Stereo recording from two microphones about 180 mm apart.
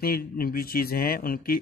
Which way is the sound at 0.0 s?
55° left (ahead or behind).